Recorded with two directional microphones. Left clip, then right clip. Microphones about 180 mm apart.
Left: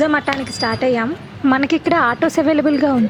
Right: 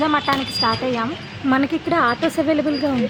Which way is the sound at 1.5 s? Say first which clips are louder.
Left 4 dB; 40° left (ahead or behind).